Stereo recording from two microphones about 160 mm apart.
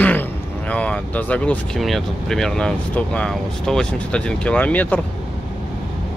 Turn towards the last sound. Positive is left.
turn(degrees=10)  # may be behind; listen again after turning